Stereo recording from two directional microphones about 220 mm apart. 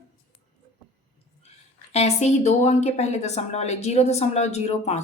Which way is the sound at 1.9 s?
30° left (ahead or behind).